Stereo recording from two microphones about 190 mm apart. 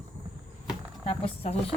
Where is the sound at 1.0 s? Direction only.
30° left (ahead or behind).